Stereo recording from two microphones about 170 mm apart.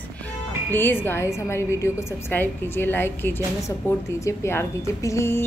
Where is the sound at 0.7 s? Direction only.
10° left (ahead or behind).